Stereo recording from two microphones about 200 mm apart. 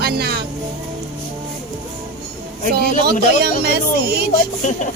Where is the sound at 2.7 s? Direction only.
55° right (ahead or behind).